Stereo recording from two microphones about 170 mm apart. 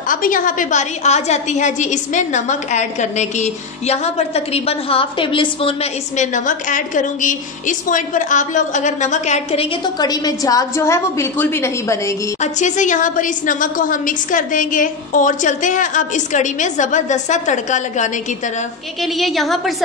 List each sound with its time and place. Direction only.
0.1 s a woman's voice: 55° left (ahead or behind); by 5.8 s 30° left (ahead or behind)
6.1 s a woman's voice: 50° left (ahead or behind)
9.9 s a woman's voice: 25° left (ahead or behind)
12.4 s a woman's voice: 45° left (ahead or behind)
19.1 s a woman's voice: centre (ahead or behind)